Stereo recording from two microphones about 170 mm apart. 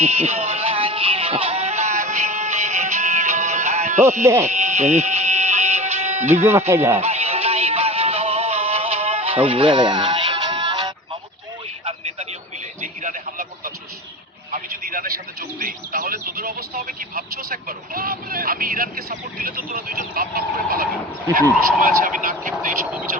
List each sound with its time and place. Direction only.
0.0 s music: 40° right (ahead or behind)
4.2 s speech: 15° right (ahead or behind)
4.4 s music: 40° right (ahead or behind)
6.3 s speech: 15° right (ahead or behind)
7.0 s music: 40° right (ahead or behind)
12.8 s radio: 50° right (ahead or behind)
14.5 s a sound: 50° right (ahead or behind)
19.5 s honk: 55° right (ahead or behind)
21.8 s a sound: 55° right (ahead or behind)
22.5 s a sound: 5° right (ahead or behind)